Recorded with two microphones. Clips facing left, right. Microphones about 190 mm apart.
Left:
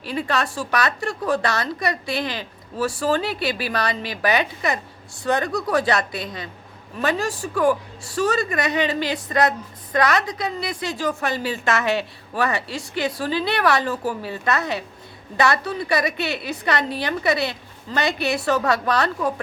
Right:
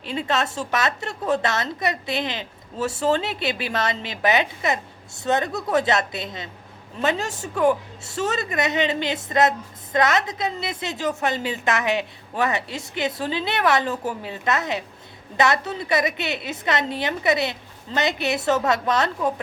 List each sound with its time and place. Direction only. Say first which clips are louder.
0.0 s a woman's voice: even; 20° right (ahead or behind)